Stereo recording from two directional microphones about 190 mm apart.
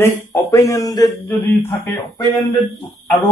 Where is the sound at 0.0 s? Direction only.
15° left (ahead or behind).